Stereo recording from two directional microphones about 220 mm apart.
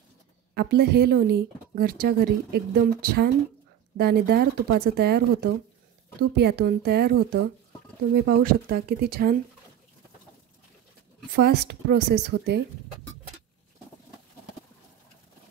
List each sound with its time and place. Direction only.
0.6 s speech: 45° right (ahead or behind)
11.3 s speech: 45° right (ahead or behind)